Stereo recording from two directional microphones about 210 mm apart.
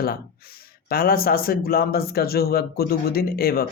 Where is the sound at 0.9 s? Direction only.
45° left (ahead or behind).